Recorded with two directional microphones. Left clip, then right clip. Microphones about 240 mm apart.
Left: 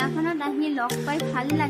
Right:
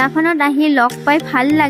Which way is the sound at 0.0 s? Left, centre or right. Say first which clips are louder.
Right 12 dB; right.